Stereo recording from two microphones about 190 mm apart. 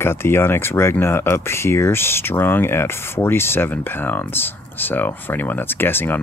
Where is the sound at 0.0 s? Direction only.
15° left (ahead or behind).